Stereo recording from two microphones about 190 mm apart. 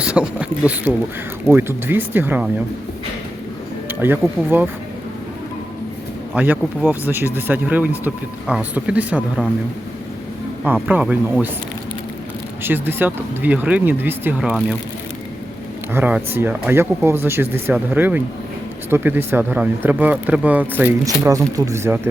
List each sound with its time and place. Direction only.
0.0 s speech: 5° right (ahead or behind)
4.0 s speech: 10° right (ahead or behind)
6.3 s speech: 10° right (ahead or behind)
10.6 s speech: 5° right (ahead or behind)
12.6 s speech: 10° right (ahead or behind)
15.9 s speech: 10° right (ahead or behind)